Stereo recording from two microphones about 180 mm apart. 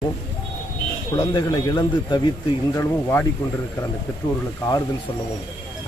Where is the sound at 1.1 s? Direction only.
20° left (ahead or behind).